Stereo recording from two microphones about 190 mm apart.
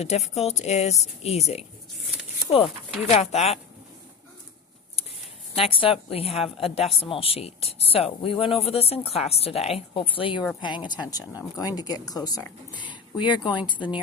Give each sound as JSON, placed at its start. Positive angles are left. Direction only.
{"t": 0.0, "sound": "speech", "side_deg": 35}
{"t": 3.1, "sound": "speech", "side_deg": 35}
{"t": 5.5, "sound": "speech", "side_deg": 30}